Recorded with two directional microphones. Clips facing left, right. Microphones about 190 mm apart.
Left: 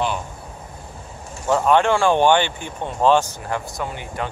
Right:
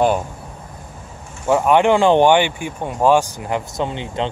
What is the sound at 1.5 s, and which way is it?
Speech, 15° right (ahead or behind).